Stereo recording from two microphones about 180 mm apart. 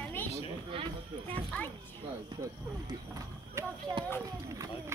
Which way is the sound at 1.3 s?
10° left (ahead or behind).